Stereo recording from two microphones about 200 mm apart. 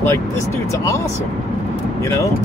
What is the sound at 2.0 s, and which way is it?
Speech, 15° left (ahead or behind).